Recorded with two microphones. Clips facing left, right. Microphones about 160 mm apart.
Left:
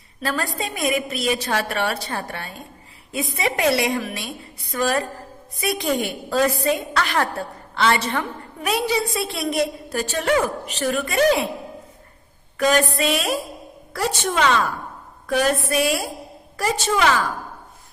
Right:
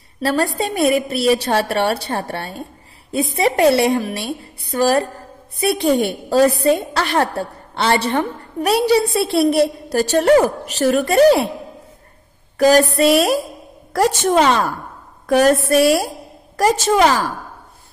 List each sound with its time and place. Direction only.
0.2 s a woman's voice: 35° right (ahead or behind)
12.5 s a woman's voice: 40° right (ahead or behind)